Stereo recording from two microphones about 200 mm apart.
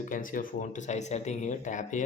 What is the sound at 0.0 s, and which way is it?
Speech, 40° left (ahead or behind).